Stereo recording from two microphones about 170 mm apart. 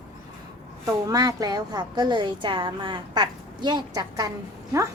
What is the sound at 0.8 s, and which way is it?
A woman's voice, 20° right (ahead or behind).